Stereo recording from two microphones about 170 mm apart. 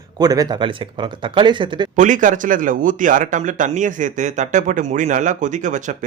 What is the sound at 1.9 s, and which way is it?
Speech, 50° right (ahead or behind).